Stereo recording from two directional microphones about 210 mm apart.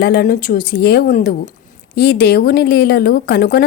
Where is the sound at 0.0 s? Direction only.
45° left (ahead or behind).